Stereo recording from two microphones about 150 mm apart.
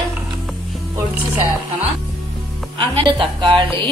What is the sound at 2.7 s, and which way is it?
A woman's voice, 35° right (ahead or behind).